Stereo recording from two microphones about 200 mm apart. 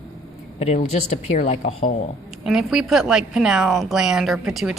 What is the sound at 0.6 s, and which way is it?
Speech, 35° left (ahead or behind).